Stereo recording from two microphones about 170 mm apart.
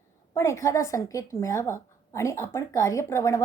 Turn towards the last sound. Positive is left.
turn(degrees=15)  # may be behind; listen again after turning